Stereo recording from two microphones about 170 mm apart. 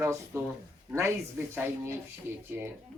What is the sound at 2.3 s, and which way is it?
Speech, 10° right (ahead or behind).